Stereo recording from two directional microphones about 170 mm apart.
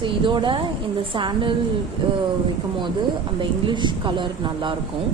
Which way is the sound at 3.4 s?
25° right (ahead or behind).